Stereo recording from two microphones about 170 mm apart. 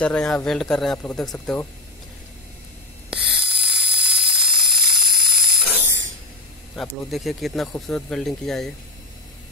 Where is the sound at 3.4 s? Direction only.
80° right.